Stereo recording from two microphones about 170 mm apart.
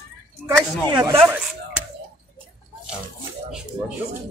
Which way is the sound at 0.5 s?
20° right (ahead or behind).